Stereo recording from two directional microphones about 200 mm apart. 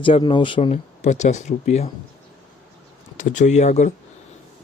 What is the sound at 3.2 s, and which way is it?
Speech, 40° left (ahead or behind).